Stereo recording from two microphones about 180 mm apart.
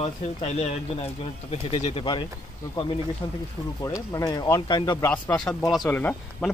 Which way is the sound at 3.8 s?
20° left (ahead or behind).